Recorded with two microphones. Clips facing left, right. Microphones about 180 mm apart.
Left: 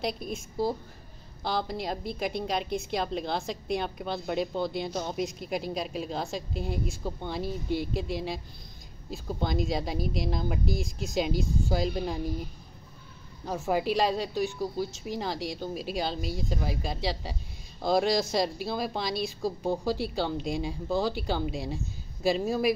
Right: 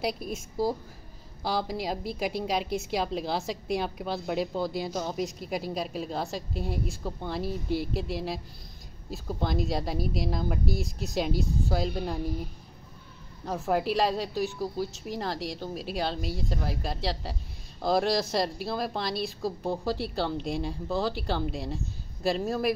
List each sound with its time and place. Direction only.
0.0 s a woman's voice: 5° right (ahead or behind)
13.5 s a woman's voice: centre (ahead or behind)